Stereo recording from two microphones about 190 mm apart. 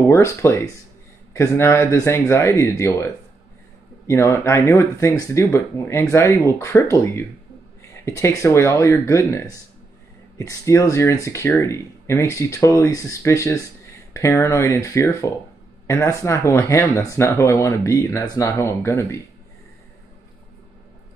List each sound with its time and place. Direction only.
0.1 s speech: 15° left (ahead or behind)
4.1 s speech: 15° left (ahead or behind)